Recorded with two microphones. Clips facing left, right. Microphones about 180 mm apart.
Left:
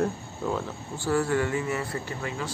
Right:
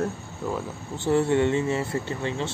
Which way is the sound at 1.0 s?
25° right (ahead or behind).